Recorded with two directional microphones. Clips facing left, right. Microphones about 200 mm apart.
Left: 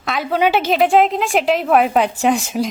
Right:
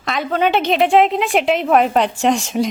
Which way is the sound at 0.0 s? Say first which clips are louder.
Left 1 dB; 5° left (ahead or behind).